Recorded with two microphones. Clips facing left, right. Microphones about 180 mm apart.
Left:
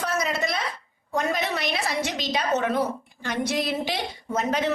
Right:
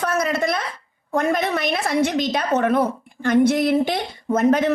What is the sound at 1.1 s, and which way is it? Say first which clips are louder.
A woman's voice: right 5 dB; 55° right (ahead or behind).